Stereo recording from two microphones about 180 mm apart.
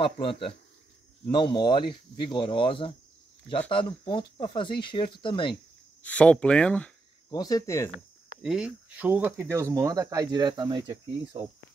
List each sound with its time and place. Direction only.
0.0 s speech: 30° left (ahead or behind)
6.0 s speech: 5° left (ahead or behind)
7.2 s speech: 20° left (ahead or behind)
8.4 s speech: 5° right (ahead or behind); by 11.4 s 20° right (ahead or behind)